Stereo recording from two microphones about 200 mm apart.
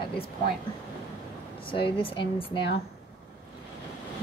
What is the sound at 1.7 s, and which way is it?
Speech, 25° left (ahead or behind).